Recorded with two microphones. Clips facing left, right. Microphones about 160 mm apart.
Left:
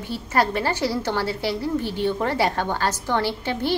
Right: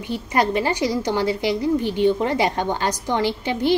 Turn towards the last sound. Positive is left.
turn(degrees=-15)  # may be behind; listen again after turning